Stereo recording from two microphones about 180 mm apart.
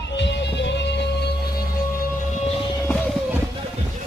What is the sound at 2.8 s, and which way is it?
Music, 10° left (ahead or behind).